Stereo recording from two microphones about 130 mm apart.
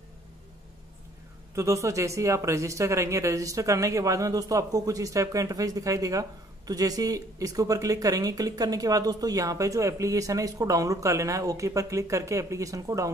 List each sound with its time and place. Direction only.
1.5 s speech: 25° right (ahead or behind)